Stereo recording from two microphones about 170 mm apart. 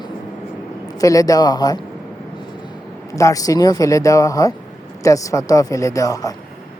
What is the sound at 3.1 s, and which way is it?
Speech, 20° left (ahead or behind).